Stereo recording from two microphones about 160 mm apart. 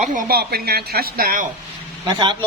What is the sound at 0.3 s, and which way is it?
A woman's voice, 75° right (ahead or behind).